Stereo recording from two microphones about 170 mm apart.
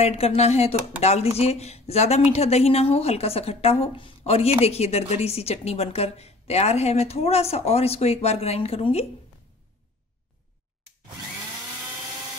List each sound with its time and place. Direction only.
0.0 s a woman's voice: 35° left (ahead or behind)